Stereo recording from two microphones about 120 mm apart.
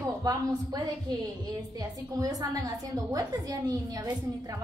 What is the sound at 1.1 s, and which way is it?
A woman's voice, 40° right (ahead or behind).